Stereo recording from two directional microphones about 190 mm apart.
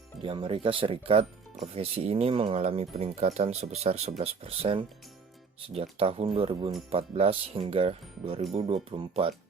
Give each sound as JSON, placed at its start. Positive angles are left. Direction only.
{"t": 0.2, "sound": "speech", "side_deg": -30}